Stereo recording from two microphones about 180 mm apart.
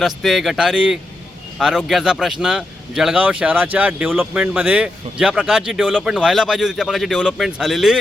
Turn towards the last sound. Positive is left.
turn(degrees=0)  # may be behind; listen again after turning